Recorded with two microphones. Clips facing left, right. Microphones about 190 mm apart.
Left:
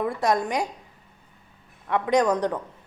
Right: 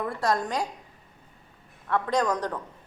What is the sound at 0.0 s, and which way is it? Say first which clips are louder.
Speech: left 3 dB; 15° left (ahead or behind).